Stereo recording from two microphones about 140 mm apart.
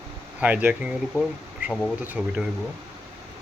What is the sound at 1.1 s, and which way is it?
Speech, 20° left (ahead or behind).